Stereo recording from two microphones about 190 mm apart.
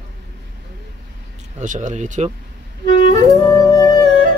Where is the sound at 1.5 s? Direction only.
40° right (ahead or behind).